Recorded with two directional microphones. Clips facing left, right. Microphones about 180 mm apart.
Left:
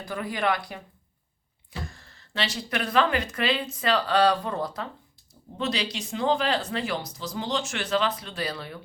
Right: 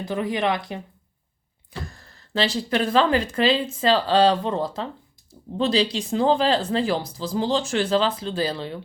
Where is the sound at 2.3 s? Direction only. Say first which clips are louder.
Right 7 dB; 30° right (ahead or behind).